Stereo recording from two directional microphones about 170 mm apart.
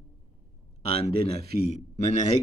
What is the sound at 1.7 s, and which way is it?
Speech, 40° left (ahead or behind).